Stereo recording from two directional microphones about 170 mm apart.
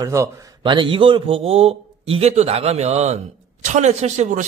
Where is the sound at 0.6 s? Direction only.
30° right (ahead or behind).